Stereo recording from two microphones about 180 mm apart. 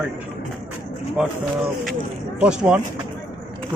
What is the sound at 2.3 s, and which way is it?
Speech, 5° right (ahead or behind).